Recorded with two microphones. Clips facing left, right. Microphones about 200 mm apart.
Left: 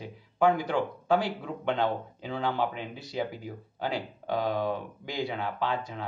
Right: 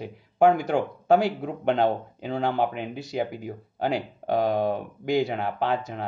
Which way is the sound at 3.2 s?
55° right (ahead or behind).